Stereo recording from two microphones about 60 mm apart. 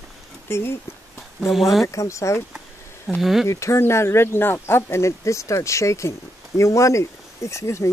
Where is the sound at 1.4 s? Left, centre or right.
Centre.